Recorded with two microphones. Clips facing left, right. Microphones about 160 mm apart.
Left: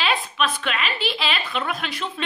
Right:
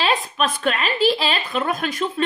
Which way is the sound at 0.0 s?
40° right (ahead or behind).